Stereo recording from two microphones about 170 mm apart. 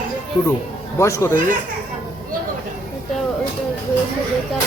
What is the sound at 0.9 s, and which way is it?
Speech, 15° left (ahead or behind).